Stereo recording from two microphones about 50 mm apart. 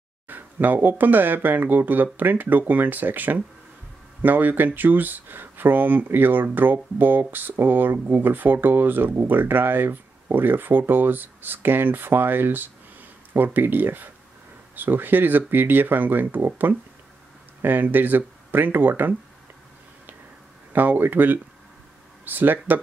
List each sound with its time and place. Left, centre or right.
0.3 s speech: right
20.7 s speech: right